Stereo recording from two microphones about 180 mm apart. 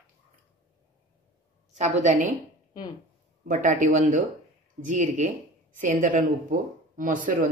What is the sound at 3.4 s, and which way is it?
A woman's voice, 45° right (ahead or behind).